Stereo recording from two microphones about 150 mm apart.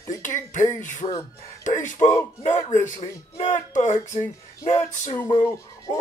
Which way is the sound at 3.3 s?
55° left (ahead or behind).